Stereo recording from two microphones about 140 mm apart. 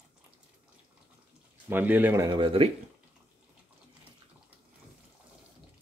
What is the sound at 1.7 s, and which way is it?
Speech, 15° right (ahead or behind).